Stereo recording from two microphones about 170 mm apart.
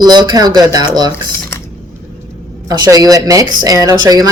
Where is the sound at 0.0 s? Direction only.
25° right (ahead or behind).